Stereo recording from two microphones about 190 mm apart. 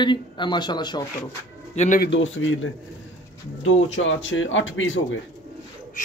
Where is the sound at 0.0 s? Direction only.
25° left (ahead or behind).